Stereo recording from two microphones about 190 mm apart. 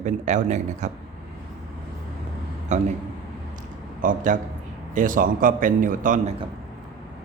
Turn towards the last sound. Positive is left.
turn(degrees=-45)  # may be behind; listen again after turning